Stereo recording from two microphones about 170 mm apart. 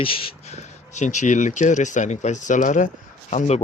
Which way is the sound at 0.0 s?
30° left (ahead or behind).